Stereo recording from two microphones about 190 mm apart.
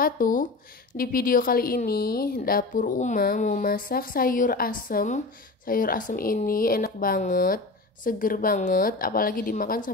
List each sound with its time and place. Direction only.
0.0 s speech: 45° left (ahead or behind)